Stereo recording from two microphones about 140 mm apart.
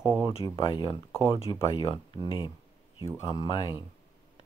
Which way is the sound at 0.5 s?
40° left (ahead or behind).